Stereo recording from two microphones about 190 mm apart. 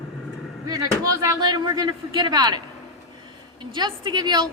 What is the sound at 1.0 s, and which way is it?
A woman's voice, 20° right (ahead or behind).